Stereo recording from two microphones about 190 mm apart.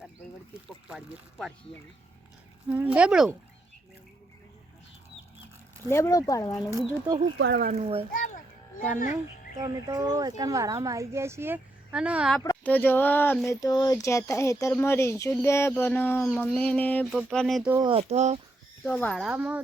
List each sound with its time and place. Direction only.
0.9 s speech: 5° right (ahead or behind)
2.6 s speech: 5° right (ahead or behind)
5.9 s speech: 15° left (ahead or behind)
6.7 s speech: 20° right (ahead or behind)
7.3 s speech: 65° right (ahead or behind)
7.7 s speech: 35° right (ahead or behind)
9.6 s speech: 20° right (ahead or behind)
12.4 s speech: 10° left (ahead or behind)
17.1 s speech: 5° right (ahead or behind)
17.8 s speech: 35° right (ahead or behind)
18.9 s speech: 5° left (ahead or behind)
19.3 s speech: 10° right (ahead or behind)